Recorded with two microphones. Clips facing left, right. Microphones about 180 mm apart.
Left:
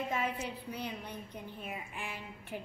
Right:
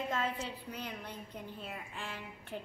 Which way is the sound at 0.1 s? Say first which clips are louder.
Left 1 dB; 15° left (ahead or behind).